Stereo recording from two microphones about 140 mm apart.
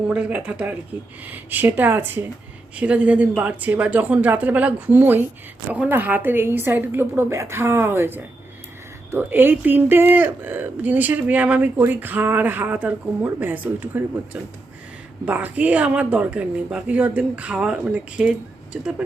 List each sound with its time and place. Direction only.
0.1 s speech: 10° right (ahead or behind)
15.3 s speech: 10° right (ahead or behind)